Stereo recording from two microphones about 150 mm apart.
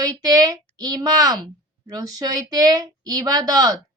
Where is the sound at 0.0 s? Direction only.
25° right (ahead or behind).